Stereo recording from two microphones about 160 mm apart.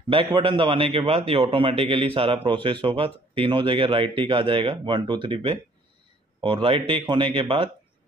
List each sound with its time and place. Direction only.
0.4 s a man's voice: 35° right (ahead or behind)